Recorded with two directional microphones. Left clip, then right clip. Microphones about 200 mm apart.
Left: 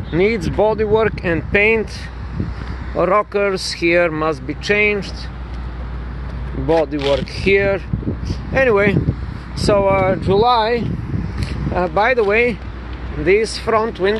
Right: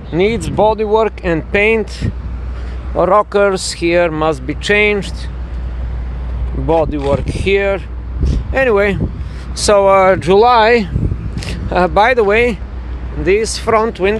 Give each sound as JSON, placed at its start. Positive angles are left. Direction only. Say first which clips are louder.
{"t": 0.1, "sound": "speech", "louder": "right 2 dB", "side_deg": -10}
{"t": 6.7, "sound": "speech", "louder": "right 2 dB", "side_deg": -10}
{"t": 7.0, "sound": "speech", "louder": "right 1 dB", "side_deg": 10}
{"t": 7.5, "sound": "speech", "louder": "right 2 dB", "side_deg": -10}
{"t": 9.6, "sound": "speech", "louder": "right 6 dB", "side_deg": -30}
{"t": 11.3, "sound": "speech", "louder": "right 6 dB", "side_deg": -25}